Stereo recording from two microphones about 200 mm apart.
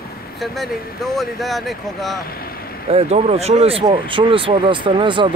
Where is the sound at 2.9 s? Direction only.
30° right (ahead or behind).